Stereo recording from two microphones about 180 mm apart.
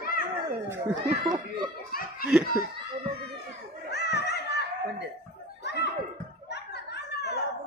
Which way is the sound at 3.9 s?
65° left (ahead or behind).